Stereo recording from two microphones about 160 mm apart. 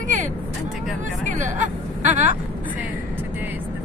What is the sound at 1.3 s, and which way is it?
Vehicle, 50° right (ahead or behind).